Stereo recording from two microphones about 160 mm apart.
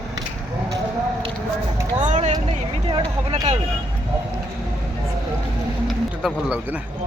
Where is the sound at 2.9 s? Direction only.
25° right (ahead or behind).